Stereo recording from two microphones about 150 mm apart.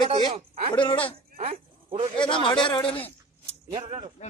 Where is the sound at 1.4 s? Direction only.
40° right (ahead or behind).